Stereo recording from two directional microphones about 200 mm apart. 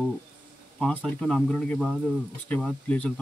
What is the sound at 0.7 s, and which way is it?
Speech, centre (ahead or behind).